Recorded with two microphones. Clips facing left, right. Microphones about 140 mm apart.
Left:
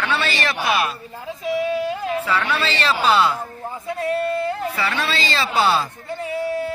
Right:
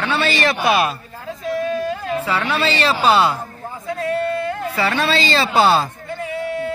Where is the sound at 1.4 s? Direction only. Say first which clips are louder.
Even; 10° left (ahead or behind).